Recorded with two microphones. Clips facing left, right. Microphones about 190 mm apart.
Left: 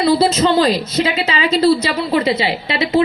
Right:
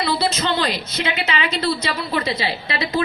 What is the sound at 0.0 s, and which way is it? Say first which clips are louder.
A woman's voice: left 8 dB; 30° left (ahead or behind).